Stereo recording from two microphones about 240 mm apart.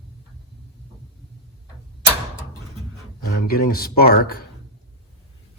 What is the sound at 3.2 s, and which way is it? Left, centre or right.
Speech, left.